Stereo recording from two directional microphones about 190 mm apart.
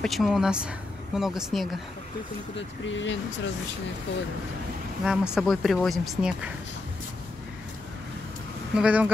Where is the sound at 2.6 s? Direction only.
75° left (ahead or behind).